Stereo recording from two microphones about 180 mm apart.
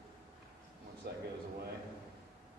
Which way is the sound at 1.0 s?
65° right (ahead or behind).